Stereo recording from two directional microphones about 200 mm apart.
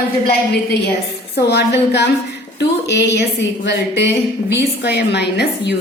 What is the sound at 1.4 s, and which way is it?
A woman's voice, 55° left (ahead or behind).